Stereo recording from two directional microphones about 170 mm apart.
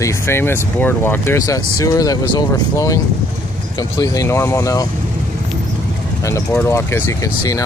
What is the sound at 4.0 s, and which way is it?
Speech, 20° left (ahead or behind).